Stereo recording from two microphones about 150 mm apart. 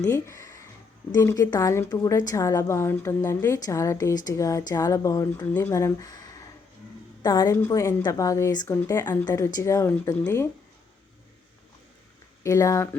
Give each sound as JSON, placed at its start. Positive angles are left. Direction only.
{"t": 0.0, "sound": "a woman's voice", "side_deg": 20}
{"t": 12.4, "sound": "a woman's voice", "side_deg": 20}